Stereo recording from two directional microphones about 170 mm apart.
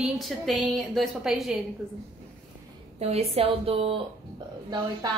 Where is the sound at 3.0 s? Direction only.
35° right (ahead or behind).